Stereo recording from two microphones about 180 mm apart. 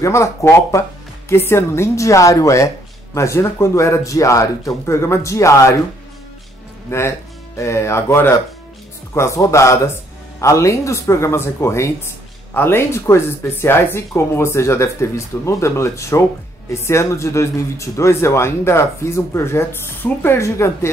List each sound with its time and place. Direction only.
0.0 s speech: 15° left (ahead or behind)
6.9 s speech: 15° left (ahead or behind)